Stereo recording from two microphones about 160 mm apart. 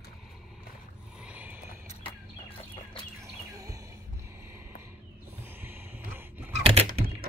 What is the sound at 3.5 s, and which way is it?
Music, 20° right (ahead or behind).